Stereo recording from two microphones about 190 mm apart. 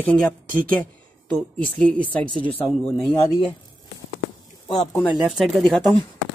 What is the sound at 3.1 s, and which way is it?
Speech, 25° left (ahead or behind).